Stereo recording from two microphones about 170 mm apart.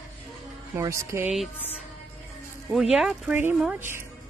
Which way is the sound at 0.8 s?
20° right (ahead or behind).